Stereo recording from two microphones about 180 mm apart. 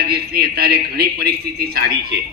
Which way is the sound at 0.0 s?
60° right (ahead or behind).